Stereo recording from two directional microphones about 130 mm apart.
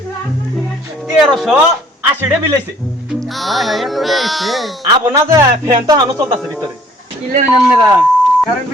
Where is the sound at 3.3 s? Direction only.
Centre (ahead or behind).